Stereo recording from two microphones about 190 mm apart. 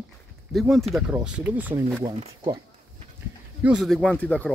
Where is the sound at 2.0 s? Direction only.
25° right (ahead or behind).